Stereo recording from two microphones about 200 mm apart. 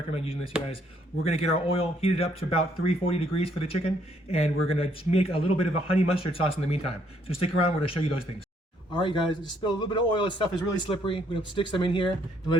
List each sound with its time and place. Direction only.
0.1 s a man's voice: 30° left (ahead or behind)